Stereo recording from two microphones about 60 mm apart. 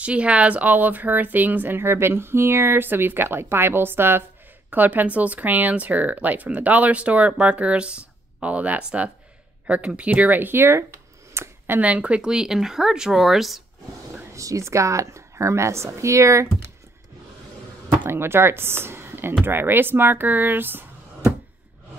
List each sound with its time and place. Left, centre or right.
0.0 s speech: right
11.8 s speech: right
12.2 s speech: centre
14.3 s a woman's voice: right
18.0 s speech: right